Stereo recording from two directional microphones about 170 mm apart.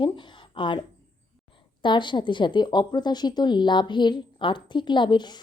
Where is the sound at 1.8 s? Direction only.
30° left (ahead or behind).